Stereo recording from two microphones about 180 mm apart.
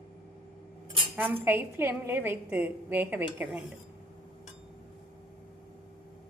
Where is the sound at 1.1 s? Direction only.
10° right (ahead or behind).